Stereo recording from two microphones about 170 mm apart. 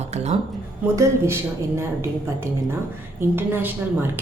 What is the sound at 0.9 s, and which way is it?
Speech, 15° right (ahead or behind).